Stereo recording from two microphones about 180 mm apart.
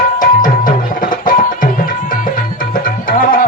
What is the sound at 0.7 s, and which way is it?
Music, 50° left (ahead or behind).